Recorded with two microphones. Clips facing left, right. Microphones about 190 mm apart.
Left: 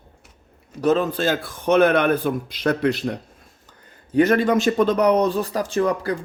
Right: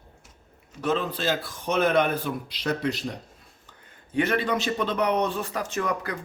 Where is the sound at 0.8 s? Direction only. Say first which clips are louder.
Left 7 dB; 40° left (ahead or behind); by 3.2 s 60° left (ahead or behind).